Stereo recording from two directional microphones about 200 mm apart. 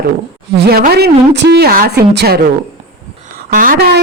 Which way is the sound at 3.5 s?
45° right (ahead or behind).